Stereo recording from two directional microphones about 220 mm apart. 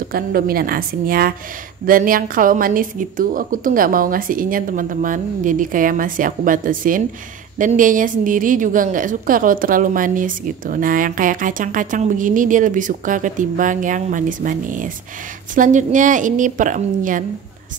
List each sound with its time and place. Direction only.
0.1 s a woman's voice: 40° right (ahead or behind)